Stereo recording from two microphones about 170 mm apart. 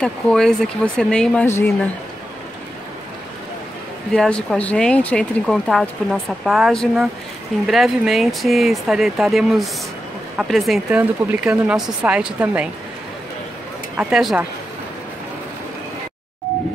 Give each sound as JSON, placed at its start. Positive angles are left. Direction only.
{"t": 0.0, "sound": "speech", "side_deg": 5}
{"t": 4.1, "sound": "speech", "side_deg": 5}
{"t": 13.9, "sound": "speech", "side_deg": -5}